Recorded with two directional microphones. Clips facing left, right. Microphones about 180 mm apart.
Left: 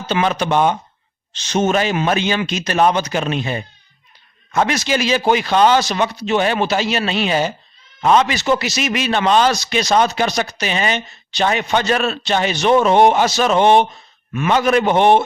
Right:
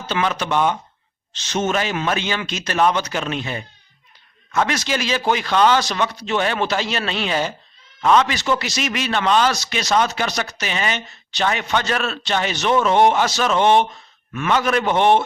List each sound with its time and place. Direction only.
0.1 s speech: 15° left (ahead or behind)
4.6 s speech: 10° left (ahead or behind)